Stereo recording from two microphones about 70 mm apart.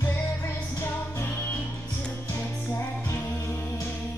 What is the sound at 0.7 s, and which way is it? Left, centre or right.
Music, left.